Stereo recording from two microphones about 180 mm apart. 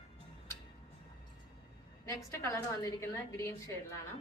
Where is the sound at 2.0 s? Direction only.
15° left (ahead or behind).